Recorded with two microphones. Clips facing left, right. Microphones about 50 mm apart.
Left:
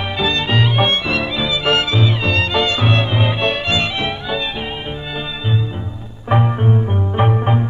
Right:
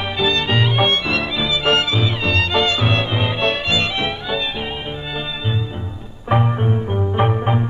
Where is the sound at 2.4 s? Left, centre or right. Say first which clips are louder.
Even; centre.